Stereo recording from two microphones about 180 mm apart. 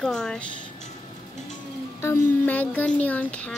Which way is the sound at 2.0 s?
10° left (ahead or behind).